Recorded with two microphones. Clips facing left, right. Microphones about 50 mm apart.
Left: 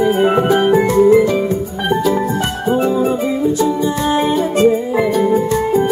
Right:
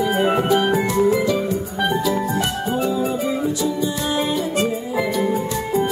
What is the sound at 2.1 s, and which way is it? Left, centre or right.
Music, left.